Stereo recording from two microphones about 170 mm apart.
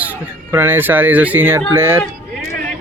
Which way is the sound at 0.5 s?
10° right (ahead or behind).